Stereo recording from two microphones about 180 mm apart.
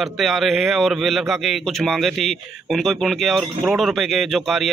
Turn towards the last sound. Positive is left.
turn(degrees=0)  # may be behind; listen again after turning